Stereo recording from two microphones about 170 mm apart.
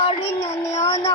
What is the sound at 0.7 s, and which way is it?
Speech, 20° left (ahead or behind).